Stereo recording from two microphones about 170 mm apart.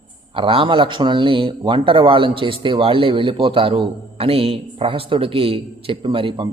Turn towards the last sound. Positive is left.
turn(degrees=-30)  # may be behind; listen again after turning